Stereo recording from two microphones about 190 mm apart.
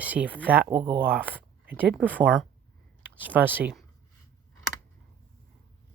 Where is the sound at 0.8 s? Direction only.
25° right (ahead or behind).